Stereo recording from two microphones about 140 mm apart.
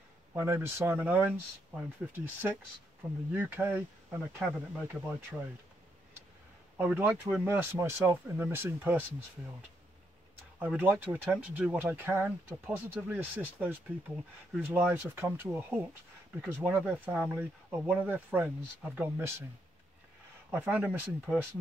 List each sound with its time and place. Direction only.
0.3 s speech: 15° right (ahead or behind)
6.8 s speech: 15° right (ahead or behind)
10.6 s speech: 10° right (ahead or behind)
20.5 s speech: 10° right (ahead or behind)